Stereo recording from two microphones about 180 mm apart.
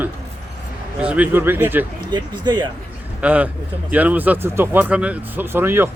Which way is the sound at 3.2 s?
10° right (ahead or behind).